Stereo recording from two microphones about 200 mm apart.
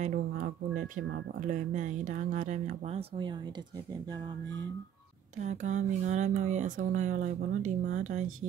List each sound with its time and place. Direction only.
0.0 s speech: 40° right (ahead or behind)
5.4 s speech: 35° right (ahead or behind)